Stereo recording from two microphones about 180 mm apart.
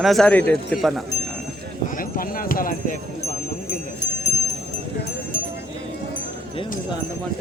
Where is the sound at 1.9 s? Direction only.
50° left (ahead or behind).